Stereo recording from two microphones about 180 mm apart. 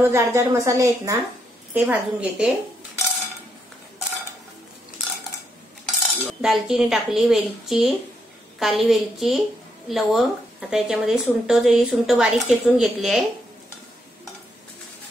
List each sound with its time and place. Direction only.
0.0 s a woman's voice: 15° right (ahead or behind)
5.9 s cutlery: centre (ahead or behind)
8.5 s a woman's voice: centre (ahead or behind)